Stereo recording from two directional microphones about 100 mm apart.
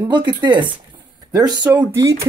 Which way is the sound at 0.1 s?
50° right (ahead or behind).